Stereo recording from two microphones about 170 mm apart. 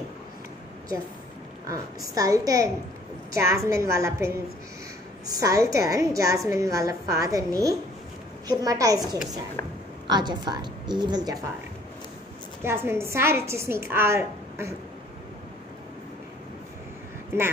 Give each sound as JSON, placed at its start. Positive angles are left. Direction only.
{"t": 1.7, "sound": "a woman's voice", "side_deg": -20}
{"t": 12.6, "sound": "a woman's voice", "side_deg": -15}
{"t": 17.3, "sound": "a woman's voice", "side_deg": -15}